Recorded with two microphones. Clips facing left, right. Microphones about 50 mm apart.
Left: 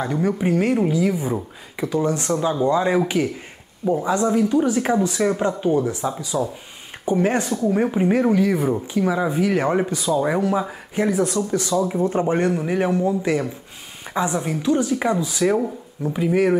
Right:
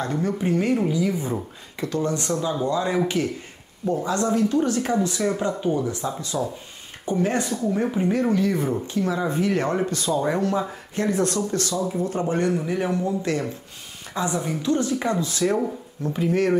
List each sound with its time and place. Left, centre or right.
0.0 s a man's voice: centre
11.9 s a man's voice: left; by 16.5 s centre